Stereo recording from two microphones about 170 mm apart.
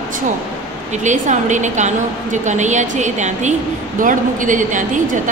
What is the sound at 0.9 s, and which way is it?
A woman's voice, 45° right (ahead or behind).